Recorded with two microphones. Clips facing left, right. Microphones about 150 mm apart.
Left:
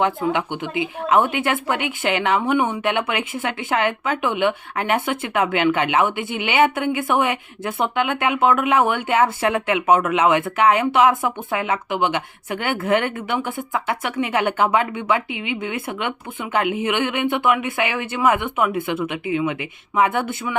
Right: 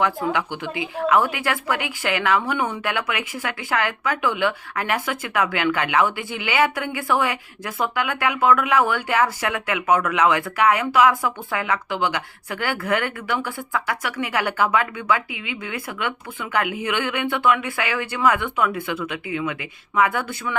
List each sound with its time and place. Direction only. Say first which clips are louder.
0.0 s speech: left 2 dB; 20° left (ahead or behind)